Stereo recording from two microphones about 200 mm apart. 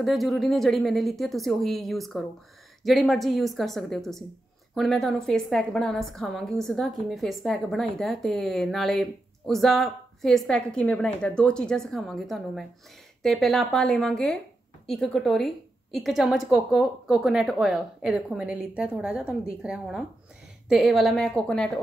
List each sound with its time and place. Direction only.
0.0 s a woman's voice: centre (ahead or behind)